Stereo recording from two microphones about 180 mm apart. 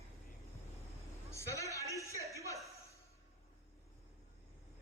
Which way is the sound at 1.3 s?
15° left (ahead or behind).